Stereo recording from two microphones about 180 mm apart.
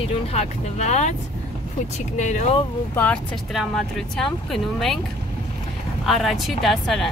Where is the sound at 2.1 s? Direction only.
40° left (ahead or behind).